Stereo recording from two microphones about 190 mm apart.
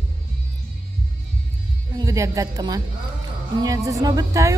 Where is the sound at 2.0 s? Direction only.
15° right (ahead or behind).